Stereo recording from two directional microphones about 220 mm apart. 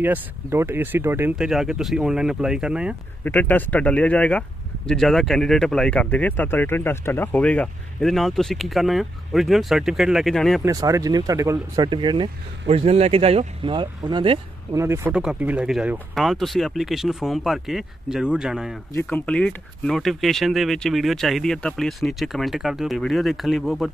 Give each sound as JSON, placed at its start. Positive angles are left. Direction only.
{"t": 0.0, "sound": "speech", "side_deg": -10}
{"t": 3.3, "sound": "speech", "side_deg": 10}
{"t": 10.6, "sound": "speech", "side_deg": -15}
{"t": 14.8, "sound": "speech", "side_deg": -10}